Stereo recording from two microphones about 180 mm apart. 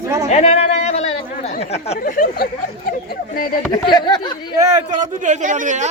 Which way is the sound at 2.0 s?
50° left (ahead or behind).